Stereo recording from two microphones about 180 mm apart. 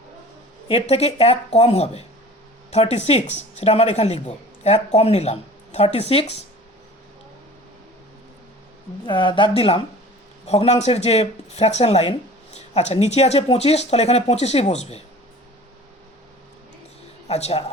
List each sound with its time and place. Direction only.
0.7 s speech: 35° left (ahead or behind)
9.0 s speech: 25° left (ahead or behind)
17.2 s speech: 35° left (ahead or behind)